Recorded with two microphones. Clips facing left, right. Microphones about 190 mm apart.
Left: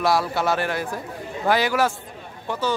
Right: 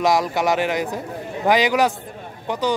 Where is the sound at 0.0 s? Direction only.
15° right (ahead or behind).